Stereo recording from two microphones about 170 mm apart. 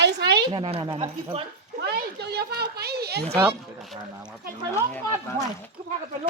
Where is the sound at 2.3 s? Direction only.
70° right (ahead or behind).